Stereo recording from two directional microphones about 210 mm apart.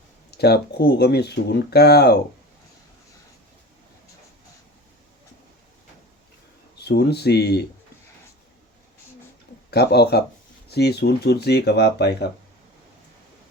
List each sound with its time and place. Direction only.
0.3 s speech: 50° left (ahead or behind)
6.7 s speech: 50° left (ahead or behind)
9.6 s speech: 50° left (ahead or behind)